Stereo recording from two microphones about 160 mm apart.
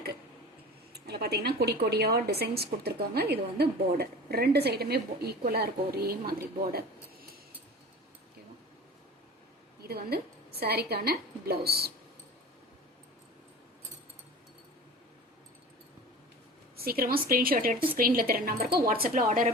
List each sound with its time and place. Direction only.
0.9 s a woman's voice: 90° right; by 7.3 s 70° right (ahead or behind)
9.8 s a woman's voice: 75° right (ahead or behind)
16.7 s a woman's voice: 70° right (ahead or behind)